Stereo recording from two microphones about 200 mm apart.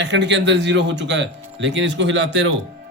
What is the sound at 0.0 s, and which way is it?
Speech, 60° right (ahead or behind).